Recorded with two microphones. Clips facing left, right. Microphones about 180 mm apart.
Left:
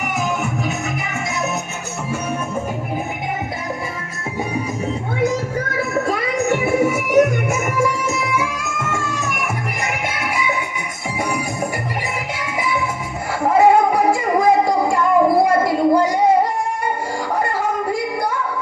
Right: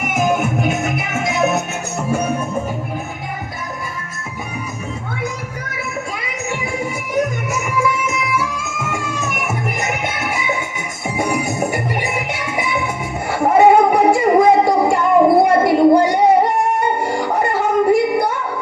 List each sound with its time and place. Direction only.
5.7 s music: 50° left (ahead or behind)
6.5 s music: 65° left (ahead or behind)
7.6 s music: 40° left (ahead or behind)
8.6 s music: 10° right (ahead or behind); by 18.3 s 25° right (ahead or behind)